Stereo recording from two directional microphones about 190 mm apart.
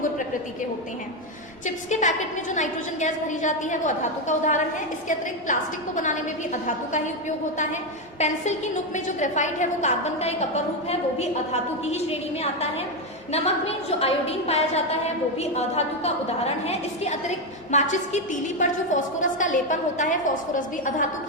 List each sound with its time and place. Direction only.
1.6 s a woman's voice: 40° left (ahead or behind)
8.2 s a woman's voice: 40° left (ahead or behind)